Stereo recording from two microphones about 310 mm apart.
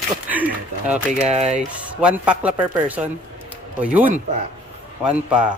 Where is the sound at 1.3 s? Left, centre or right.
Right.